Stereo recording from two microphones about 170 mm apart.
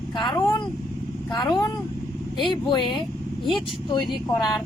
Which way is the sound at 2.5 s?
30° left (ahead or behind).